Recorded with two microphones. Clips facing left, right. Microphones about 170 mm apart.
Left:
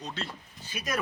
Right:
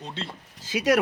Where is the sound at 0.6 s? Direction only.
90° right.